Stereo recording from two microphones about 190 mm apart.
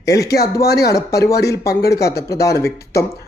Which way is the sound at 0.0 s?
15° left (ahead or behind).